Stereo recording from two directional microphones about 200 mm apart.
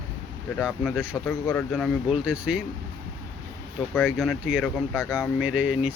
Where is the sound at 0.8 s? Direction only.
Centre (ahead or behind).